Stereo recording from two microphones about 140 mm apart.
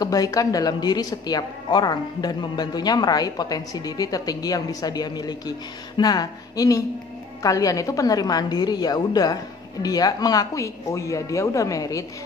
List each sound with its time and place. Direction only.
0.0 s speech: 25° left (ahead or behind)